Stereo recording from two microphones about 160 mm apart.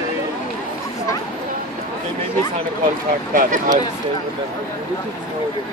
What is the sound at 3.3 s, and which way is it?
Speech, 55° right (ahead or behind).